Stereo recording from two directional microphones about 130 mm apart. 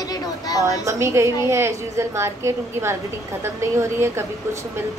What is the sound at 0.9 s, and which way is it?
A woman's voice, 20° right (ahead or behind).